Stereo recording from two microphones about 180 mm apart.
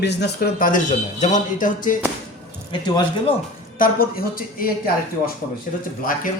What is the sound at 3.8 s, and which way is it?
A man's voice, 55° left (ahead or behind).